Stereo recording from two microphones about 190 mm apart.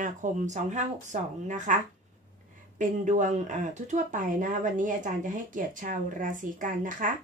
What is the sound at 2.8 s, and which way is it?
Speech, 40° right (ahead or behind).